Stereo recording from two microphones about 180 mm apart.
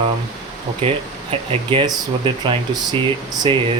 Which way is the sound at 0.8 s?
30° right (ahead or behind).